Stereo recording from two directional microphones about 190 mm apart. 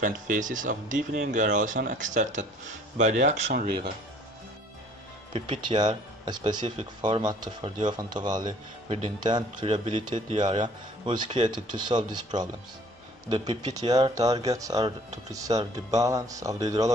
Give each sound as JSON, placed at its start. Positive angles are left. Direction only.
{"t": 0.0, "sound": "speech", "side_deg": -45}
{"t": 5.3, "sound": "speech", "side_deg": -25}
{"t": 13.9, "sound": "speech", "side_deg": -20}